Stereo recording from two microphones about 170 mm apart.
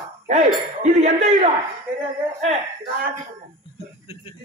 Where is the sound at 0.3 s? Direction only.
45° right (ahead or behind).